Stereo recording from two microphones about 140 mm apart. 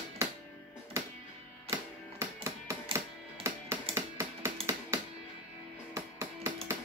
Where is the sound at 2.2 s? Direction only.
20° right (ahead or behind).